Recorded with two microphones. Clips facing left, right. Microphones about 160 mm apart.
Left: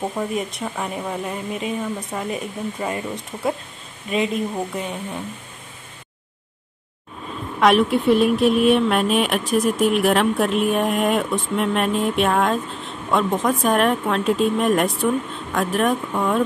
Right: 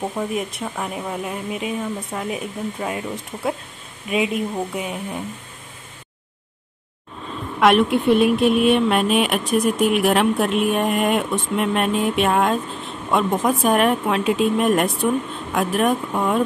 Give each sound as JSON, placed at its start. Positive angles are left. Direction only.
{"t": 0.0, "sound": "a woman's voice", "side_deg": 0}
{"t": 7.6, "sound": "speech", "side_deg": 0}